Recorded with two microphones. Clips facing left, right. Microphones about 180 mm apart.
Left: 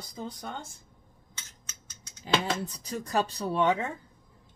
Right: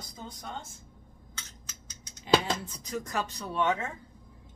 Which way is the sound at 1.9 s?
40° left (ahead or behind).